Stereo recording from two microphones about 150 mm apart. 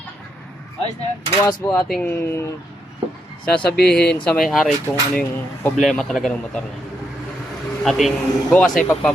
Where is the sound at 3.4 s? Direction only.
10° left (ahead or behind).